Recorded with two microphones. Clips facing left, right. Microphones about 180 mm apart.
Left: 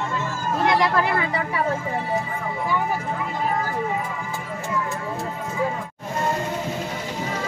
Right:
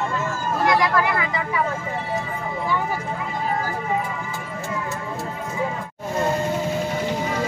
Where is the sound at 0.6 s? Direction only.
25° left (ahead or behind).